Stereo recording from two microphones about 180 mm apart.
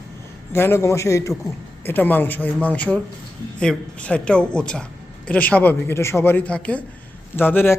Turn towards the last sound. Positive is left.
turn(degrees=10)  # may be behind; listen again after turning